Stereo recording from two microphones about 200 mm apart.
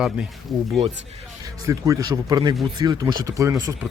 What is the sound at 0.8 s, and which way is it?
Speech, 30° right (ahead or behind).